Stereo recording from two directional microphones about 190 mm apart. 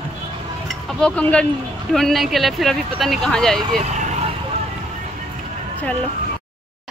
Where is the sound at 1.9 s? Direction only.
Centre (ahead or behind).